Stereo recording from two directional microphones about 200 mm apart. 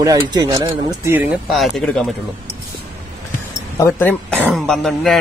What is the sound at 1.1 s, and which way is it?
Speech, 5° right (ahead or behind).